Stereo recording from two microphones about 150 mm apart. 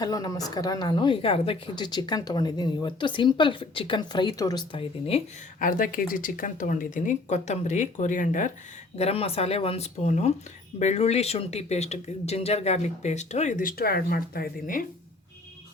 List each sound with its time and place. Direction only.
0.0 s speech: 25° left (ahead or behind)
5.5 s speech: 65° left (ahead or behind)
9.0 s speech: 40° left (ahead or behind); by 14.8 s 75° left (ahead or behind)